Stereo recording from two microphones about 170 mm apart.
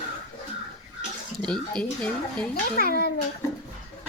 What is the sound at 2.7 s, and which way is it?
Speech, 60° left (ahead or behind).